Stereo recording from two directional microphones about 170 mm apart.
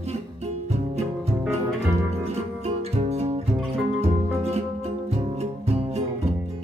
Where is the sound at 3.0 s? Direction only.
40° right (ahead or behind).